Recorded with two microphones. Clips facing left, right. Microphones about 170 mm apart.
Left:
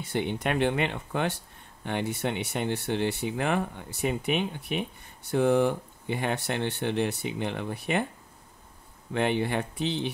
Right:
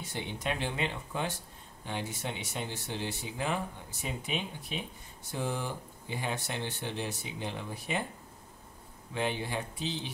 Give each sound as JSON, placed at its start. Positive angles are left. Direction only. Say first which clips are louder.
{"t": 0.0, "sound": "speech", "louder": "left 8 dB", "side_deg": 60}
{"t": 9.1, "sound": "speech", "louder": "left 7 dB", "side_deg": 65}